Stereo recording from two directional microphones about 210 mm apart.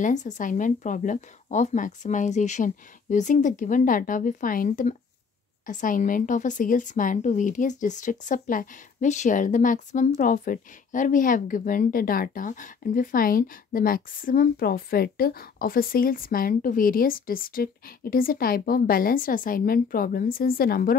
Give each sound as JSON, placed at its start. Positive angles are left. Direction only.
{"t": 0.0, "sound": "a woman's voice", "side_deg": 35}